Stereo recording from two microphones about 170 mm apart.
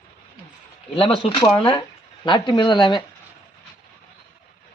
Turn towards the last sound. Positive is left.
turn(degrees=25)  # may be behind; listen again after turning